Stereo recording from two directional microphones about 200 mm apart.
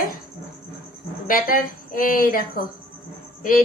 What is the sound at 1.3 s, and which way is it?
A woman's voice, 45° left (ahead or behind).